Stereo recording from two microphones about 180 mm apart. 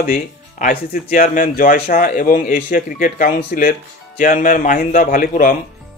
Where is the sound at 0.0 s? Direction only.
55° left (ahead or behind).